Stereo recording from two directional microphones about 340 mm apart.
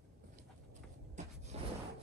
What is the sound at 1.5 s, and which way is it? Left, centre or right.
Rub, centre.